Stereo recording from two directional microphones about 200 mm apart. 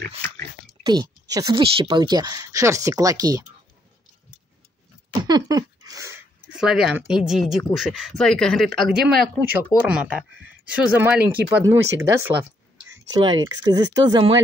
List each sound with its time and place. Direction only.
0.8 s speech: 20° right (ahead or behind)
5.2 s a sound: 20° right (ahead or behind)
6.5 s speech: centre (ahead or behind); by 14.4 s 20° right (ahead or behind)